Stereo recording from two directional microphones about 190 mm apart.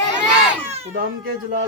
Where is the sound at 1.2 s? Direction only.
55° right (ahead or behind).